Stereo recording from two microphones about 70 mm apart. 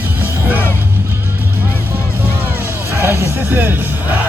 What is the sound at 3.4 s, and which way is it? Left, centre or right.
Speech, right.